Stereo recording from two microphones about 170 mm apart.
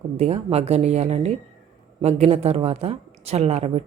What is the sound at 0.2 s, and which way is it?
Speech, 35° right (ahead or behind).